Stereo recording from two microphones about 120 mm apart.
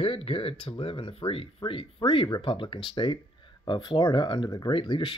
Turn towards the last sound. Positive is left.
turn(degrees=45)  # may be behind; listen again after turning